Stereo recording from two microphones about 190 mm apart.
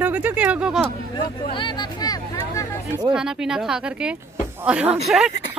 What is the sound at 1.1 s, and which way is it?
Speech, 25° left (ahead or behind).